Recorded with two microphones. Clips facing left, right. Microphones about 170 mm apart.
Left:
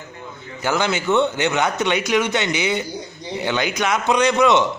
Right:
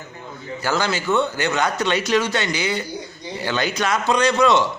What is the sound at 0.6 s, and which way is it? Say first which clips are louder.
A man's voice: left 2 dB; 20° left (ahead or behind).